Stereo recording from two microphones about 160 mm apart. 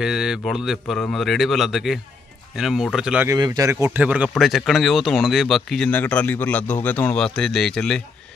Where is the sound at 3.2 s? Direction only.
25° right (ahead or behind); by 8.3 s 5° left (ahead or behind).